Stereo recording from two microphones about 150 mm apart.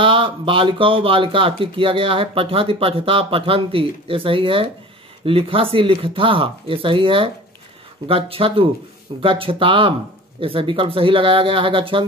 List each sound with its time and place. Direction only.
0.0 s speech: 35° right (ahead or behind)